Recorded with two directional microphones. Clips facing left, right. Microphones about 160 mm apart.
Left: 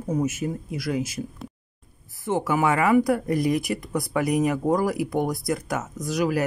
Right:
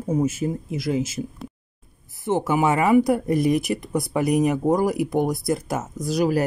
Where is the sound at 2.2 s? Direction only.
25° right (ahead or behind).